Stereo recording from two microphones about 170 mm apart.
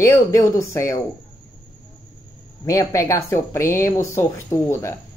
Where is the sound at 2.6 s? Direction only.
20° left (ahead or behind).